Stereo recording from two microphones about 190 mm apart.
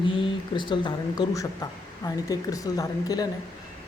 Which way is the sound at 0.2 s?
25° left (ahead or behind).